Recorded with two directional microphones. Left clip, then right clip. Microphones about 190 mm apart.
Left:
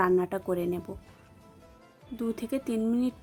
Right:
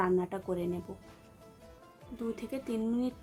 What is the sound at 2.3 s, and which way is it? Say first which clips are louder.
Speech: left 7 dB; 25° left (ahead or behind).